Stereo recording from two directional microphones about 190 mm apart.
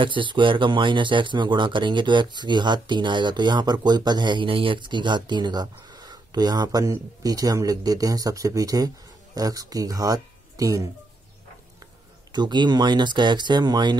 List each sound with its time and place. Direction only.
0.0 s speech: 25° right (ahead or behind)
12.3 s speech: 20° right (ahead or behind)